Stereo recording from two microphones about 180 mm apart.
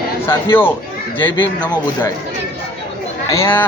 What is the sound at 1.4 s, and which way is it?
Speech, 25° left (ahead or behind).